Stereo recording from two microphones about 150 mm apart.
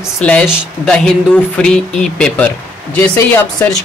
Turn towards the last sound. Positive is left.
turn(degrees=10)  # may be behind; listen again after turning